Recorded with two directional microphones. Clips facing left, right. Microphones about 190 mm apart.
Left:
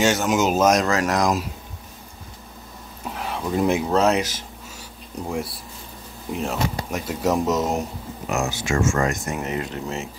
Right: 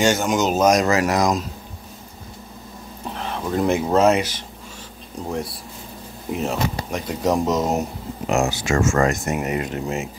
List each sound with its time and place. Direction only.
0.0 s speech: centre (ahead or behind)
3.2 s speech: 5° left (ahead or behind)
8.3 s speech: 25° right (ahead or behind)
8.6 s speech: 60° right (ahead or behind)
9.3 s speech: 15° right (ahead or behind)